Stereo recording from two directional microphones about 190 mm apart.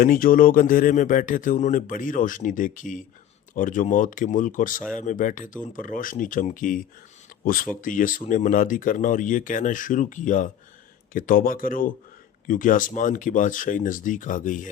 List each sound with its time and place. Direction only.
0.0 s speech: 45° left (ahead or behind)